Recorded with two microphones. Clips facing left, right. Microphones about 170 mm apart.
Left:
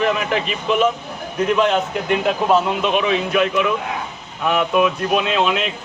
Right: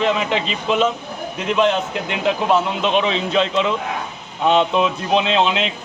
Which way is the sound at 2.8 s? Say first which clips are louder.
Even; 25° right (ahead or behind).